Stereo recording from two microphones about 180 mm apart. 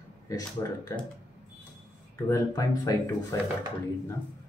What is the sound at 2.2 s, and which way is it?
Speech, 15° left (ahead or behind).